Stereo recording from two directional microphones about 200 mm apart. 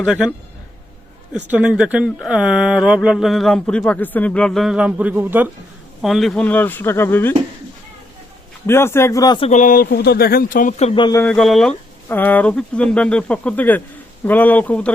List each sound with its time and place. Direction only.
0.0 s speech: 5° right (ahead or behind)
1.5 s speech: 5° right (ahead or behind); by 7.3 s 10° left (ahead or behind)
8.6 s speech: 10° left (ahead or behind)
9.5 s speech: 40° left (ahead or behind); by 11.2 s 25° left (ahead or behind)
11.2 s speech: 5° left (ahead or behind)